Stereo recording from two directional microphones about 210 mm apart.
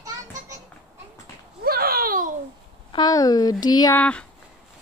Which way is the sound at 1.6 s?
45° right (ahead or behind).